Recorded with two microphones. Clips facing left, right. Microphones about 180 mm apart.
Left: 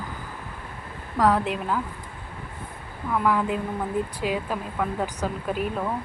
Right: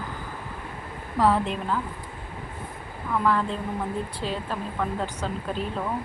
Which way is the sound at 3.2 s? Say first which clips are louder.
Left 1 dB; 10° left (ahead or behind).